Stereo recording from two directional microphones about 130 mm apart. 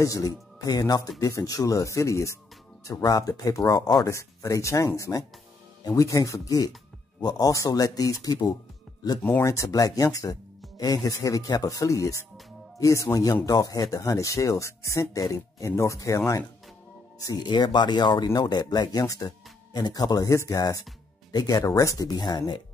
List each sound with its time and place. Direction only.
0.0 s speech: 25° left (ahead or behind)
17.2 s speech: 30° left (ahead or behind)